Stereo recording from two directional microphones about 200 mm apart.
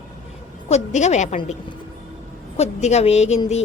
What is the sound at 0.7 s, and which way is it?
Speech, 35° left (ahead or behind).